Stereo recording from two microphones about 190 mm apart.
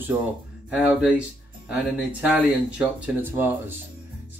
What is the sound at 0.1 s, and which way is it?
Speech, 15° right (ahead or behind).